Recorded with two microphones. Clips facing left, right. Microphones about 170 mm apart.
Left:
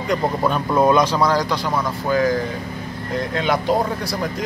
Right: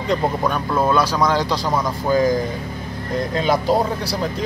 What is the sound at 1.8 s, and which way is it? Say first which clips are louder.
Speech: right 2 dB; 15° right (ahead or behind).